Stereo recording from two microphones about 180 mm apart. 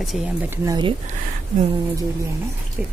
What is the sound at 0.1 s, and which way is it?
Speech, 5° right (ahead or behind).